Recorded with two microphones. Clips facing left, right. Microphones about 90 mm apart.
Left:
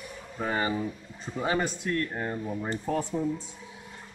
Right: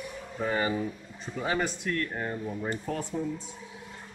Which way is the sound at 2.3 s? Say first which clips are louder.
Left 1 dB; 15° left (ahead or behind).